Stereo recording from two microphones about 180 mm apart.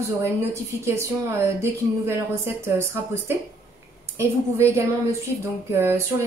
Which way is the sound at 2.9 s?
15° right (ahead or behind).